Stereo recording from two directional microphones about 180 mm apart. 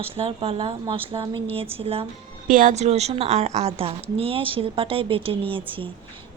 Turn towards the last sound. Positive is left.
turn(degrees=-30)  # may be behind; listen again after turning